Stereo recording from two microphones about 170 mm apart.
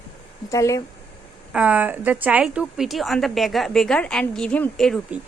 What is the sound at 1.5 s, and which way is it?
A woman's voice, 10° right (ahead or behind).